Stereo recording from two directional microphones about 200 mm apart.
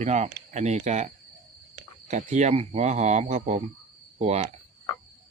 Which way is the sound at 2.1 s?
40° right (ahead or behind).